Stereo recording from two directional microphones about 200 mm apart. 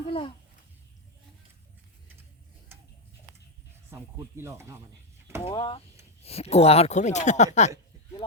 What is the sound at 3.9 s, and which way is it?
Speech, 15° right (ahead or behind).